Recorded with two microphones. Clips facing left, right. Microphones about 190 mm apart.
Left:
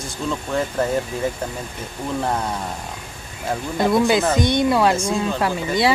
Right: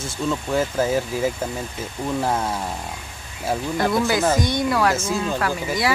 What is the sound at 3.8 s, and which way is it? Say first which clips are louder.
Speech: left 4 dB; 20° left (ahead or behind).